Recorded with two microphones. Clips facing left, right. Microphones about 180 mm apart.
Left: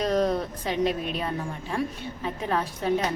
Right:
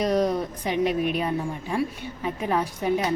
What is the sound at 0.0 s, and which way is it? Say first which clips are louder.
A woman's voice: right 1 dB; 10° right (ahead or behind).